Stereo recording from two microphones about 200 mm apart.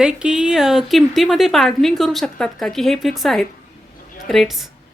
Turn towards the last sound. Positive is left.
turn(degrees=0)  # may be behind; listen again after turning